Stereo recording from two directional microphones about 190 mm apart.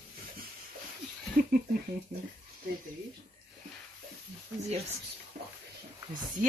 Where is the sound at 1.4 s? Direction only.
50° right (ahead or behind).